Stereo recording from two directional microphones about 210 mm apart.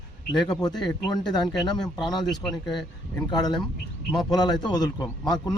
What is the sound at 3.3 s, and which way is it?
A man's voice, 20° left (ahead or behind).